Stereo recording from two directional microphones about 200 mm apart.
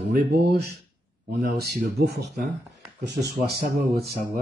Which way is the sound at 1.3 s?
50° right (ahead or behind).